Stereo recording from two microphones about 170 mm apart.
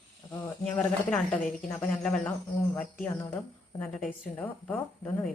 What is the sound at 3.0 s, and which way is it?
A woman's voice, 15° left (ahead or behind).